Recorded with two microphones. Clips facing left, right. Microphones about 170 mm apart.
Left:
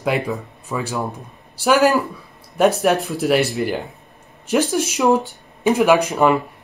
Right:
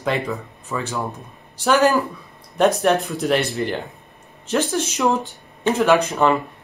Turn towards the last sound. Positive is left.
turn(degrees=10)  # may be behind; listen again after turning